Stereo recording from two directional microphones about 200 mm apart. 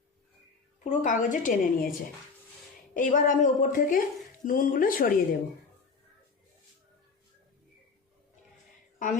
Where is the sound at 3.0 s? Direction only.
40° left (ahead or behind).